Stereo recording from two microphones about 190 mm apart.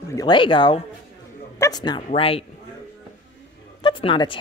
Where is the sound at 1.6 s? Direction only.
20° left (ahead or behind).